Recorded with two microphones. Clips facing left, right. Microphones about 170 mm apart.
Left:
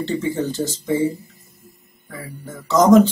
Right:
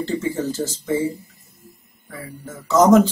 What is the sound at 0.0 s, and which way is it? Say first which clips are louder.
Speech: left 1 dB; centre (ahead or behind).